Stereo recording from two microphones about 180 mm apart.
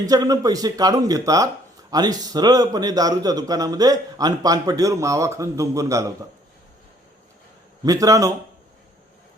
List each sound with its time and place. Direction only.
0.0 s a man's voice: 20° right (ahead or behind)
7.9 s a man's voice: 20° right (ahead or behind)